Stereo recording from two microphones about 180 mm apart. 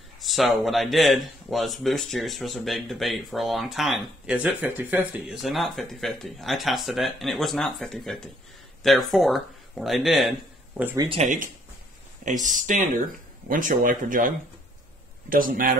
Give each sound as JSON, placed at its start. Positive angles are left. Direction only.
{"t": 0.2, "sound": "speech", "side_deg": 0}
{"t": 10.8, "sound": "speech", "side_deg": -10}
{"t": 11.1, "sound": "speech", "side_deg": -40}